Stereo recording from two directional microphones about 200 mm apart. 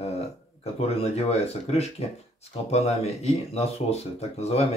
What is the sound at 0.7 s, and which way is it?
Speech, 30° left (ahead or behind).